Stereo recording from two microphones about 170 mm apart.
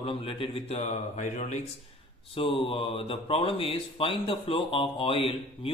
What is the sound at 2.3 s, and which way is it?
Speech, 30° left (ahead or behind).